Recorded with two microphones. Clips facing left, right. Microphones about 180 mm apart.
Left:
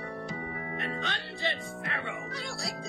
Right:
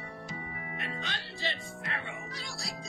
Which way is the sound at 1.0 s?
60° left (ahead or behind).